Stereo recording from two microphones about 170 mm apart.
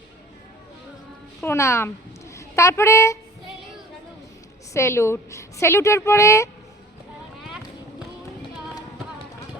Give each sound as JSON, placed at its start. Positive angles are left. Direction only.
{"t": 1.4, "sound": "a woman's voice", "side_deg": 15}
{"t": 4.7, "sound": "a woman's voice", "side_deg": 15}
{"t": 7.4, "sound": "a sound", "side_deg": -5}